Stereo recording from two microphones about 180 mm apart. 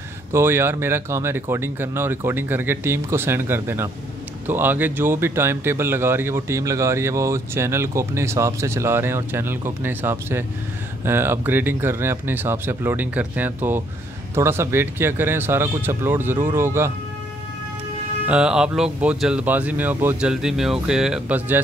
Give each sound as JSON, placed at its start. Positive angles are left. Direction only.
{"t": 0.3, "sound": "speech", "side_deg": -15}
{"t": 18.2, "sound": "speech", "side_deg": -5}